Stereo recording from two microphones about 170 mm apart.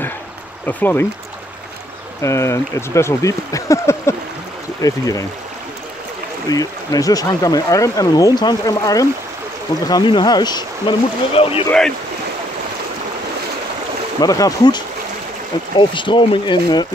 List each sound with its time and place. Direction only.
0.7 s speech: 10° left (ahead or behind)
2.2 s speech: 15° left (ahead or behind)
6.5 s speech: 20° left (ahead or behind)
14.2 s speech: 20° left (ahead or behind)
15.8 s speech: 30° left (ahead or behind)